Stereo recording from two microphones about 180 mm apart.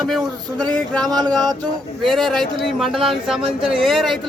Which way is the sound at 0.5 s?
20° right (ahead or behind).